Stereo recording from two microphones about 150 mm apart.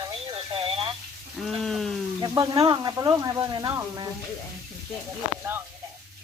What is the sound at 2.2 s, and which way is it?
Speech, 25° right (ahead or behind).